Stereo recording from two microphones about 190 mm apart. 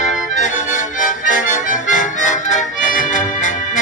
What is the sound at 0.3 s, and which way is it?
Music, 40° left (ahead or behind).